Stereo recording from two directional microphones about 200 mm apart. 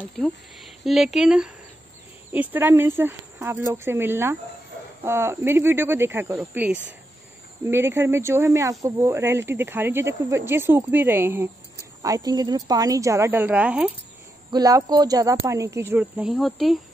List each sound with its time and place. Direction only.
0.2 s speech: centre (ahead or behind)
14.5 s speech: 20° right (ahead or behind); by 16.8 s centre (ahead or behind)